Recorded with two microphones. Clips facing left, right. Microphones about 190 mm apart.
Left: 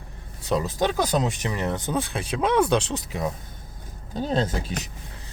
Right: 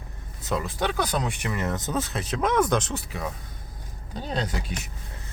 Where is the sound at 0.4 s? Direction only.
20° left (ahead or behind).